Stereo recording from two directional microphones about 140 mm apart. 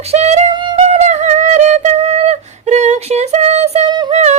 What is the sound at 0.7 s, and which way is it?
Music, 55° right (ahead or behind).